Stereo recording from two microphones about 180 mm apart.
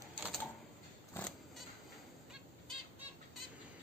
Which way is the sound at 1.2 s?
10° left (ahead or behind).